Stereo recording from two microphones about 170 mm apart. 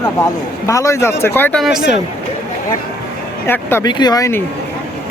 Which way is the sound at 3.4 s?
15° left (ahead or behind).